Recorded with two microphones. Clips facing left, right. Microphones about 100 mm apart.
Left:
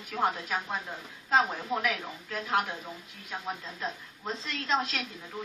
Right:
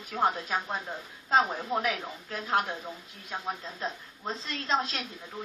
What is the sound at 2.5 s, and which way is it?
Speech, 35° right (ahead or behind).